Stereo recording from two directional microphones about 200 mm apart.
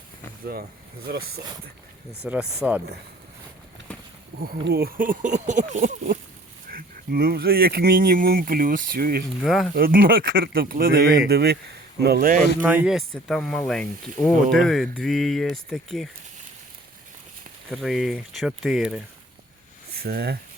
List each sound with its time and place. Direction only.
2.2 s speech: 5° right (ahead or behind)
4.4 s speech: 50° right (ahead or behind)
9.4 s speech: centre (ahead or behind)
9.7 s speech: 45° right (ahead or behind)
12.6 s speech: 5° right (ahead or behind)
17.7 s speech: centre (ahead or behind)
20.0 s speech: 50° right (ahead or behind)